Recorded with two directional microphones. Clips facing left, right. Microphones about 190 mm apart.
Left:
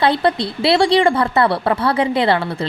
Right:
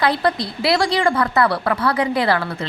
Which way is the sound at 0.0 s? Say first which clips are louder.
Left 3 dB; 25° left (ahead or behind).